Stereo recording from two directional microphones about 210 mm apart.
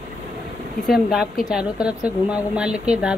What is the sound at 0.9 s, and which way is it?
Speech, centre (ahead or behind).